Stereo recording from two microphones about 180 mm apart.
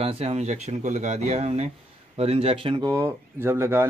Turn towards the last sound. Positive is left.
turn(degrees=-15)  # may be behind; listen again after turning